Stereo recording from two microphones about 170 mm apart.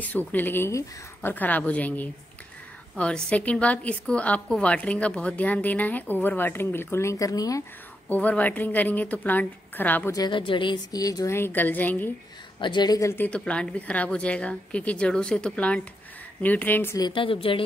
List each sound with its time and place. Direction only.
0.0 s a woman's voice: 10° left (ahead or behind)
8.1 s a woman's voice: 10° left (ahead or behind)
10.1 s a woman's voice: 25° left (ahead or behind); by 12.1 s 10° left (ahead or behind)
12.5 s a woman's voice: 25° left (ahead or behind)